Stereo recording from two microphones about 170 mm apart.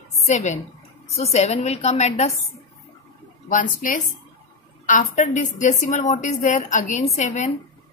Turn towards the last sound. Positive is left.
turn(degrees=45)  # may be behind; listen again after turning